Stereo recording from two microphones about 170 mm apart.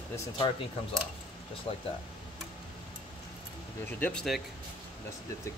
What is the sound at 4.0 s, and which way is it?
Speech, 5° left (ahead or behind).